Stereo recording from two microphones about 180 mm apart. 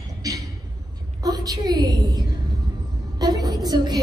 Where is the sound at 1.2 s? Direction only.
20° right (ahead or behind).